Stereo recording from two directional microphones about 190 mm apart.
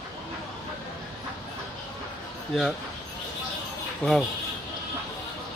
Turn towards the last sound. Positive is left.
turn(degrees=0)  # may be behind; listen again after turning